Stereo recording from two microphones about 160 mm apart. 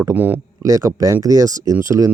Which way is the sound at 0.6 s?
20° right (ahead or behind).